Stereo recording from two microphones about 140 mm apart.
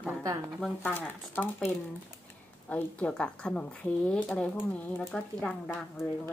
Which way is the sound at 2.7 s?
10° left (ahead or behind).